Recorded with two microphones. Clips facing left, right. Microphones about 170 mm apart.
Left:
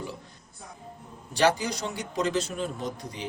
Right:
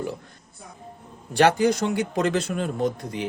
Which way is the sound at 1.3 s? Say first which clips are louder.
Right 6 dB; 55° right (ahead or behind).